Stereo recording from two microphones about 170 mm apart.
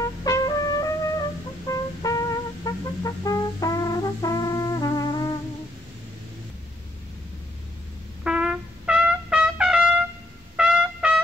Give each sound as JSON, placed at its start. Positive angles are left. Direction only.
{"t": 0.2, "sound": "trumpet", "side_deg": 20}
{"t": 1.7, "sound": "music", "side_deg": 20}
{"t": 8.2, "sound": "trumpet", "side_deg": -5}